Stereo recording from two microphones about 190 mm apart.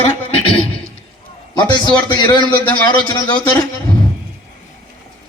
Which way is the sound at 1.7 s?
20° left (ahead or behind).